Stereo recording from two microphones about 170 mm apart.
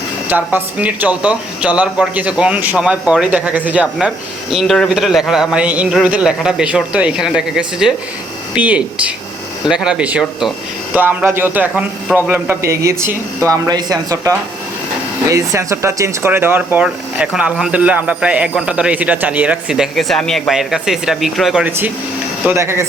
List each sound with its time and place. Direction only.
0.3 s a man's voice: 10° right (ahead or behind)
22.4 s speech: 15° right (ahead or behind)